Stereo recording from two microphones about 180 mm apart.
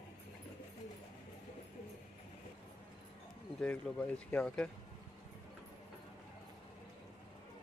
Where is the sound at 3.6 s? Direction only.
5° left (ahead or behind).